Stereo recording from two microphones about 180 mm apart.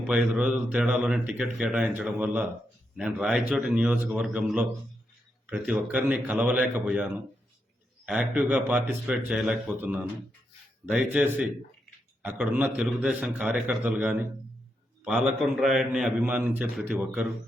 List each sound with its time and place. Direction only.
0.1 s a man's voice: 5° right (ahead or behind)